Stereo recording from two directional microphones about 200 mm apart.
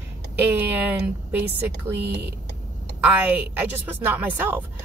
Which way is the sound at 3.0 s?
10° right (ahead or behind).